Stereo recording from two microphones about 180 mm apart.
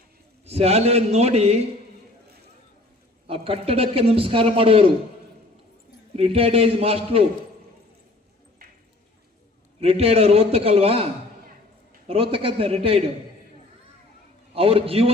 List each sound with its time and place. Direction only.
0.4 s a man's voice: 35° right (ahead or behind)
3.2 s a man's voice: 30° right (ahead or behind)
6.1 s a man's voice: 30° right (ahead or behind)
9.8 s a man's voice: 35° right (ahead or behind)
12.0 s a man's voice: 30° right (ahead or behind)
14.5 s a man's voice: 30° right (ahead or behind)